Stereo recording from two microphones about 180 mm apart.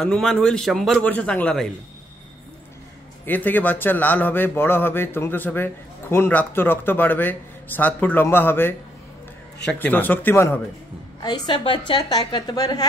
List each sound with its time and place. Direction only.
0.0 s a man's voice: 5° left (ahead or behind)
3.3 s a man's voice: 10° left (ahead or behind)
11.1 s a woman's voice: 25° left (ahead or behind)